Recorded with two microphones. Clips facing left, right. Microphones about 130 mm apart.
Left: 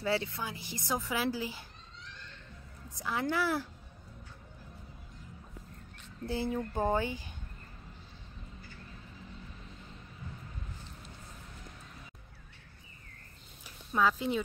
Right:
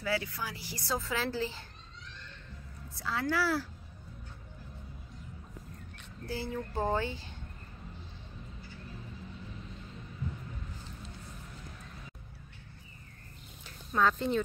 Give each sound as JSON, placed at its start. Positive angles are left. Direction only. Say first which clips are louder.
{"t": 0.0, "sound": "a woman's voice", "louder": "left 2 dB", "side_deg": 25}
{"t": 3.0, "sound": "a woman's voice", "louder": "even", "side_deg": 20}
{"t": 6.2, "sound": "speech", "louder": "left 3 dB", "side_deg": 20}
{"t": 13.7, "sound": "a sound", "louder": "right 1 dB", "side_deg": 10}